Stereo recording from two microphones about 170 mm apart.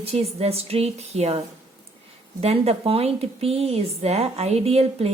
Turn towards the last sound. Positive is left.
turn(degrees=-35)  # may be behind; listen again after turning